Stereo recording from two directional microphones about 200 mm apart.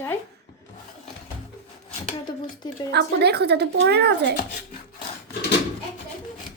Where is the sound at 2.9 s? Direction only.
55° right (ahead or behind).